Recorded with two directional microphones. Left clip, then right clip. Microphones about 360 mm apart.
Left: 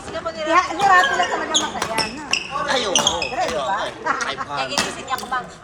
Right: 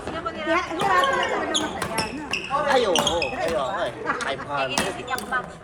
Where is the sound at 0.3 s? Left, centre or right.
Centre.